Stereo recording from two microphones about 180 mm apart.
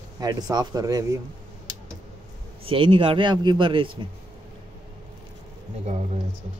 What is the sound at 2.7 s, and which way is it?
Speech, 30° right (ahead or behind).